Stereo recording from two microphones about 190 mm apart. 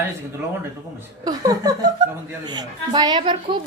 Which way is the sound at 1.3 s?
20° right (ahead or behind).